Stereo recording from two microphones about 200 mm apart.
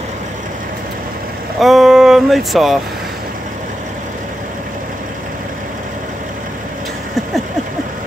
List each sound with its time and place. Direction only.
1.6 s speech: centre (ahead or behind)